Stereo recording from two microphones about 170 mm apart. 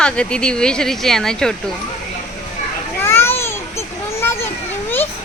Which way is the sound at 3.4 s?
15° left (ahead or behind).